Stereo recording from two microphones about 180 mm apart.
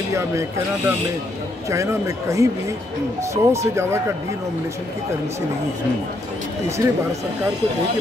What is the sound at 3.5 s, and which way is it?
Speech, 15° right (ahead or behind).